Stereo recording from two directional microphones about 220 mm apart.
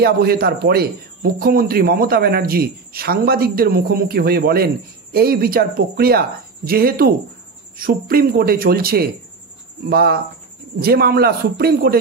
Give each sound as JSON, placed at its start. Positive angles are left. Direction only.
{"t": 0.0, "sound": "a man's voice", "side_deg": -45}